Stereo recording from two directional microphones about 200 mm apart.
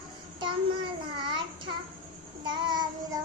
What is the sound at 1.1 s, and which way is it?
Child singing, 25° right (ahead or behind).